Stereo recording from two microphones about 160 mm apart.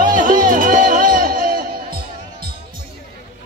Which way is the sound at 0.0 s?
55° right (ahead or behind).